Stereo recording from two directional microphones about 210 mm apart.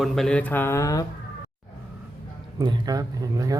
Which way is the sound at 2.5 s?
20° right (ahead or behind).